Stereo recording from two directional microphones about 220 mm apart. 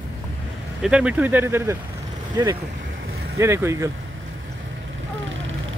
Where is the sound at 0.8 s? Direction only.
5° right (ahead or behind).